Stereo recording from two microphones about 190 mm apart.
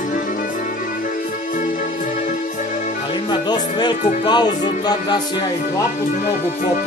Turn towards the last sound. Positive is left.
turn(degrees=20)  # may be behind; listen again after turning